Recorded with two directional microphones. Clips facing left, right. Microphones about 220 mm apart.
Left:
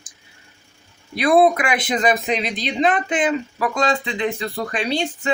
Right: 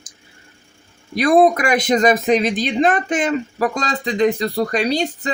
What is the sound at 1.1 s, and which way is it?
Speech, 45° right (ahead or behind).